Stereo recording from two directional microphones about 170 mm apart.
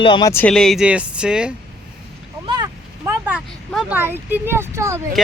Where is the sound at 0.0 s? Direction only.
25° left (ahead or behind).